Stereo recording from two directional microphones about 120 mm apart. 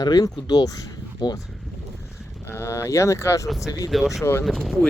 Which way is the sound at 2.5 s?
25° left (ahead or behind).